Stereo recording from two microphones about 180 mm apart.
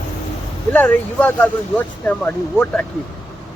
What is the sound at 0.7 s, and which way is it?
Speech, 10° left (ahead or behind).